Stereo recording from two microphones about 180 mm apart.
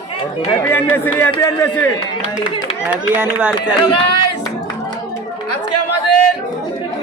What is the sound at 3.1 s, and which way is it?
Speech, 10° right (ahead or behind).